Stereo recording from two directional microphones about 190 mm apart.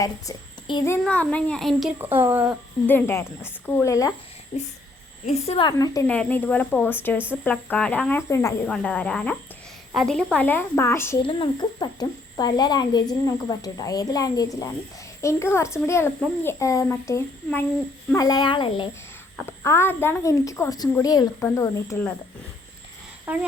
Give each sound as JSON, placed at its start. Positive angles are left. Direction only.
{"t": 0.0, "sound": "a child's voice", "side_deg": 20}
{"t": 1.0, "sound": "a child's voice", "side_deg": 5}
{"t": 2.1, "sound": "speech", "side_deg": -10}
{"t": 2.8, "sound": "a child's voice", "side_deg": 10}
{"t": 4.5, "sound": "a woman's voice", "side_deg": 30}
{"t": 5.7, "sound": "a child's voice", "side_deg": 20}
{"t": 6.1, "sound": "a child's voice", "side_deg": 5}
{"t": 11.3, "sound": "a child's voice", "side_deg": 25}
{"t": 19.4, "sound": "a child's voice", "side_deg": 15}
{"t": 23.2, "sound": "speech", "side_deg": -5}